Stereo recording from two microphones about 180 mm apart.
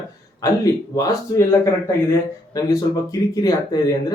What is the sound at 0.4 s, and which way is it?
Speech, 20° left (ahead or behind).